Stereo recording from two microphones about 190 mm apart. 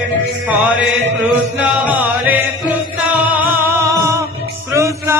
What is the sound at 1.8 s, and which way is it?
Music, 10° right (ahead or behind).